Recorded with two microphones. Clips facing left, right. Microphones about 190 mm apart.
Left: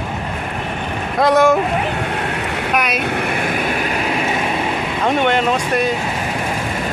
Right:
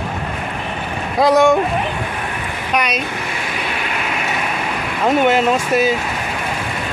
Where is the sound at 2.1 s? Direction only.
75° left (ahead or behind).